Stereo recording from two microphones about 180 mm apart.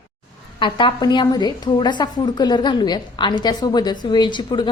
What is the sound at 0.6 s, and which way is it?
A woman's voice, 25° left (ahead or behind).